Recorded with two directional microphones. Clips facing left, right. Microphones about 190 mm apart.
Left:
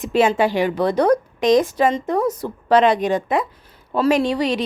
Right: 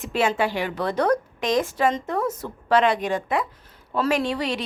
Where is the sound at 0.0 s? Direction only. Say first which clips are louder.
Left 6 dB; 20° left (ahead or behind).